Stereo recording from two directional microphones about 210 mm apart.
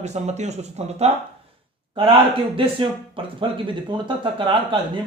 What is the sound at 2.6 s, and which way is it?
Speech, 25° right (ahead or behind).